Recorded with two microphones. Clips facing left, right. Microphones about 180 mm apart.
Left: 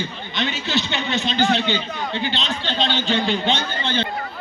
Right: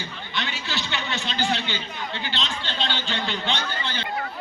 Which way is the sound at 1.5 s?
20° left (ahead or behind).